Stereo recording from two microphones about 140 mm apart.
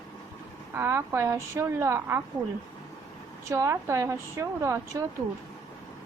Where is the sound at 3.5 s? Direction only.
20° right (ahead or behind).